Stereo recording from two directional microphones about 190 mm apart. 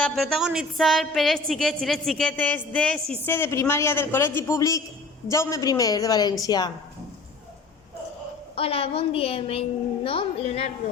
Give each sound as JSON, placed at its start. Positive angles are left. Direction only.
{"t": 0.0, "sound": "a woman's voice", "side_deg": 0}
{"t": 8.5, "sound": "a woman's voice", "side_deg": 30}